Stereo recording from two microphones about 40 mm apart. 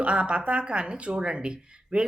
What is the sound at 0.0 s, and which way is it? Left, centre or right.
Speech, right.